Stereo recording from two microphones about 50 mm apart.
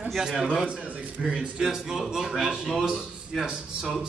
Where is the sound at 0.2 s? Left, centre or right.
Centre.